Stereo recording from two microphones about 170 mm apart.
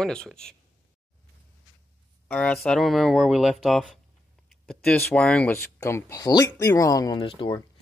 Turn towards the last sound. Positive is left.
turn(degrees=30)  # may be behind; listen again after turning